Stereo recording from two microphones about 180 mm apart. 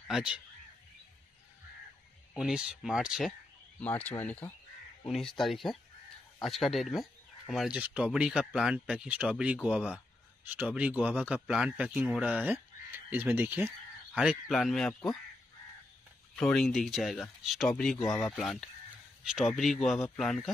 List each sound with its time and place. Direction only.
0.1 s speech: 5° right (ahead or behind)
2.3 s speech: 5° right (ahead or behind)
3.8 s speech: 10° left (ahead or behind)
16.3 s speech: centre (ahead or behind)
17.9 s speech: 20° left (ahead or behind)
18.2 s speech: 5° left (ahead or behind)